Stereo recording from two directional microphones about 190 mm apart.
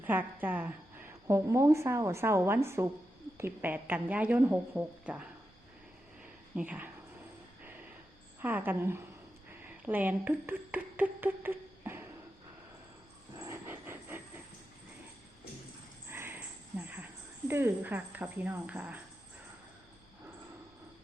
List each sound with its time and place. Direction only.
0.0 s a woman's voice: 10° right (ahead or behind)
6.6 s a woman's voice: 10° right (ahead or behind)
8.4 s a woman's voice: 10° right (ahead or behind)
13.3 s a sound: 15° right (ahead or behind)
16.0 s a sound: 10° right (ahead or behind)
17.5 s a woman's voice: 10° right (ahead or behind)